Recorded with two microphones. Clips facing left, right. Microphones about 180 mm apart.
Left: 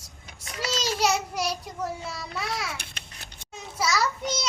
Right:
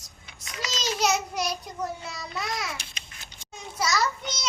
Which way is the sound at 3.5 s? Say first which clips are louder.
Left 1 dB; 5° left (ahead or behind).